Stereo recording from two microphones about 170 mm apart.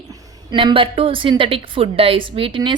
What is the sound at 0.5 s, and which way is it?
A woman's voice, 30° right (ahead or behind).